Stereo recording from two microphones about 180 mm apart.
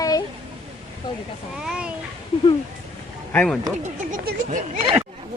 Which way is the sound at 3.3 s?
5° left (ahead or behind).